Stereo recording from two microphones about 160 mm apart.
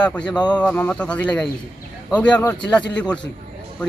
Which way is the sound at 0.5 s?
10° left (ahead or behind).